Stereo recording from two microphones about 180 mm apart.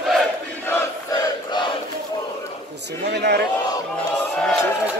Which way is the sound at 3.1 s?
65° right (ahead or behind).